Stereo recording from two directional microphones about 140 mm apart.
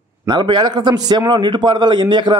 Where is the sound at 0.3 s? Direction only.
30° right (ahead or behind).